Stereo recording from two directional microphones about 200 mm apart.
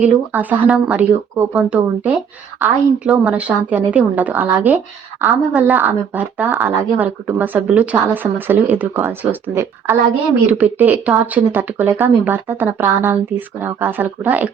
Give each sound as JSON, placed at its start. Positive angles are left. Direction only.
{"t": 0.0, "sound": "a woman's voice", "side_deg": -5}